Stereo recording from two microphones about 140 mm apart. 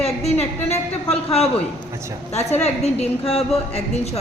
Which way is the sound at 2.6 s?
45° left (ahead or behind).